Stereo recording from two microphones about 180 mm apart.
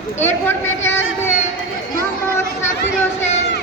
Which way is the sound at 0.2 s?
15° left (ahead or behind).